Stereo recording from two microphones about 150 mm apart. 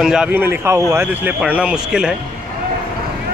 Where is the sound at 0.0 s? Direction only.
5° right (ahead or behind).